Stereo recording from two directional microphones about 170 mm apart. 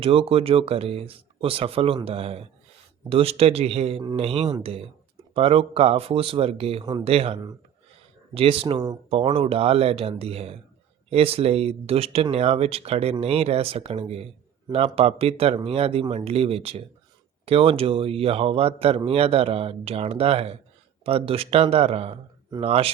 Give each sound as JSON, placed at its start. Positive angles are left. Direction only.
{"t": 0.0, "sound": "a man's voice", "side_deg": -35}